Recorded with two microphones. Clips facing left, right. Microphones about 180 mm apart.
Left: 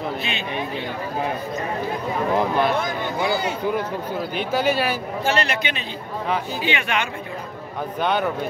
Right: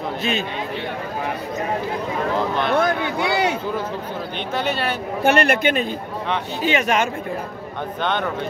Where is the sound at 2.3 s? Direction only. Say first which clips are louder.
Left 3 dB; 10° left (ahead or behind).